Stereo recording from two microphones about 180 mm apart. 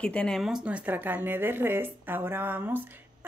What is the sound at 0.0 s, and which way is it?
Speech, 5° left (ahead or behind).